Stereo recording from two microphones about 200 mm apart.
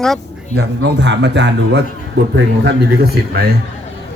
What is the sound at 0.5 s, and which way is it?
A man's voice, 60° right (ahead or behind).